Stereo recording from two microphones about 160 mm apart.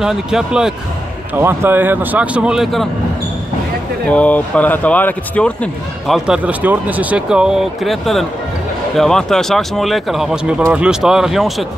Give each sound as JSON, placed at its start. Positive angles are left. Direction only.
{"t": 0.0, "sound": "speech", "side_deg": -5}
{"t": 1.3, "sound": "speech", "side_deg": -15}
{"t": 4.1, "sound": "speech", "side_deg": 10}